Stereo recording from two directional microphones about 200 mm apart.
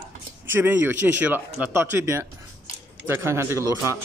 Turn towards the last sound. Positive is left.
turn(degrees=-15)  # may be behind; listen again after turning